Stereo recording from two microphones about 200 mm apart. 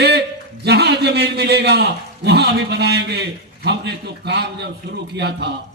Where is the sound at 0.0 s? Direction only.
55° right (ahead or behind).